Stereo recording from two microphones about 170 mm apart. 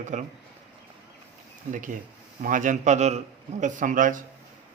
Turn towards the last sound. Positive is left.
turn(degrees=-50)  # may be behind; listen again after turning